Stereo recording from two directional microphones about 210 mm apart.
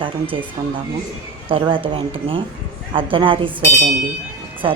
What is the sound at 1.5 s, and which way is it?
A woman's voice, 25° right (ahead or behind).